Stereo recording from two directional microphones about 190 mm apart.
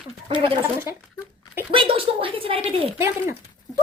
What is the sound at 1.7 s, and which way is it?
A woman's voice, 30° right (ahead or behind).